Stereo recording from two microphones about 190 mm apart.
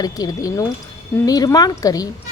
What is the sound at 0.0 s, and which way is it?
A woman's voice, 20° left (ahead or behind).